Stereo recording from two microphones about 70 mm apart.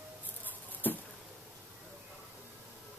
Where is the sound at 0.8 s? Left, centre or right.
Left.